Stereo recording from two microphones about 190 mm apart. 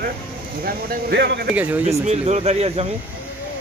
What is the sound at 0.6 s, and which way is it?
Speech, 55° right (ahead or behind).